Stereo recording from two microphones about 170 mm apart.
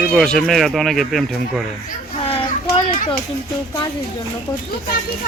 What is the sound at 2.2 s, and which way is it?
Children playing, 35° left (ahead or behind).